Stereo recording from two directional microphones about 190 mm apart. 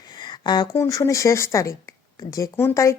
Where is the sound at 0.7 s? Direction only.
15° left (ahead or behind).